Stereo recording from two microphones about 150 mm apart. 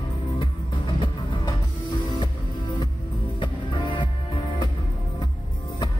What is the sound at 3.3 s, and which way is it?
Music, 35° left (ahead or behind).